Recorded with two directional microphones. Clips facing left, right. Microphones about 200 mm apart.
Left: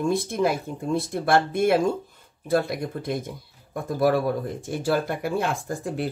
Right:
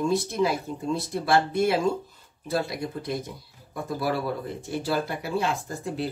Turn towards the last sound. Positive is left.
turn(degrees=50)  # may be behind; listen again after turning